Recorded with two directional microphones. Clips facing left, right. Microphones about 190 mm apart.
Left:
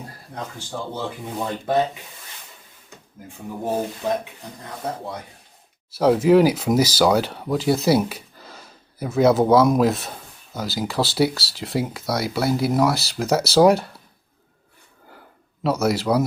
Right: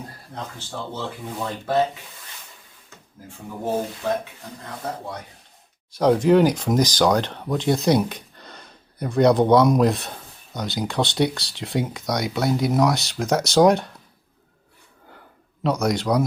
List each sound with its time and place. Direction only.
0.9 s speech: 20° left (ahead or behind)
4.0 s speech: 15° left (ahead or behind)
5.9 s speech: 5° left (ahead or behind)
15.6 s speech: 5° left (ahead or behind)